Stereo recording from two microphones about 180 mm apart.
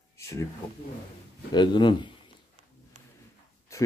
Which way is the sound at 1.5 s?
25° left (ahead or behind).